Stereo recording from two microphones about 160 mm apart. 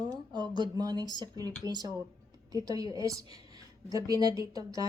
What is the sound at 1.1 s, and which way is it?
A woman's voice, 25° right (ahead or behind).